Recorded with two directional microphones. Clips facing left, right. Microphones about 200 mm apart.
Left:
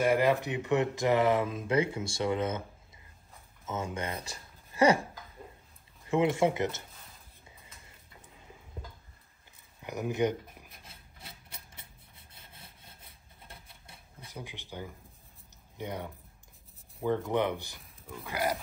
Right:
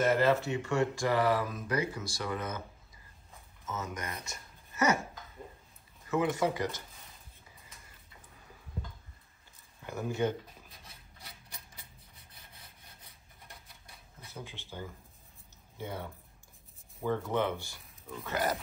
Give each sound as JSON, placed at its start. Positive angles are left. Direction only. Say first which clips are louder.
{"t": 0.0, "sound": "speech", "louder": "left 1 dB", "side_deg": 15}
{"t": 3.6, "sound": "speech", "louder": "left 4 dB", "side_deg": 30}
{"t": 6.0, "sound": "speech", "louder": "left 3 dB", "side_deg": 25}
{"t": 9.8, "sound": "a sound", "louder": "left 3 dB", "side_deg": 15}
{"t": 12.5, "sound": "wood", "louder": "left 2 dB", "side_deg": 25}
{"t": 14.2, "sound": "speech", "louder": "left 1 dB", "side_deg": 15}